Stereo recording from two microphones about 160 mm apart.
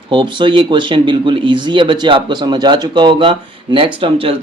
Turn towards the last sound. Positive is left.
turn(degrees=-35)  # may be behind; listen again after turning